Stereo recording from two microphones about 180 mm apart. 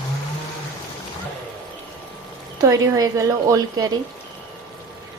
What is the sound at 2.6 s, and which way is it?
A woman's voice, 15° right (ahead or behind).